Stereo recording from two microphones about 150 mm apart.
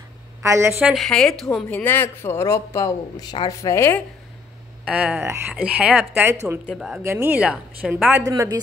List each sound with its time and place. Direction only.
0.4 s a woman's voice: 20° right (ahead or behind)
0.9 s speech: 5° left (ahead or behind)
4.8 s a woman's voice: 10° right (ahead or behind)
8.2 s a woman's voice: 25° right (ahead or behind)